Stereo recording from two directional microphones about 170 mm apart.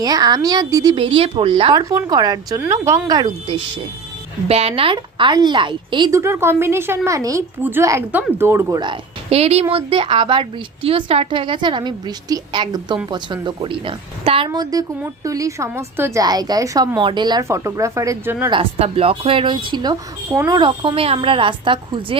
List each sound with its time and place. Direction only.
0.0 s a woman's voice: 25° right (ahead or behind)
1.8 s a woman's voice: 20° right (ahead or behind)
3.1 s a woman's voice: 25° right (ahead or behind)
8.8 s a woman's voice: 35° right (ahead or behind); by 18.5 s 15° right (ahead or behind)
18.5 s a woman's voice: 35° right (ahead or behind)